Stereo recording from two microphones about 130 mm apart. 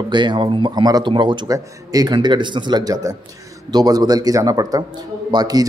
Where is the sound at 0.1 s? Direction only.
40° right (ahead or behind).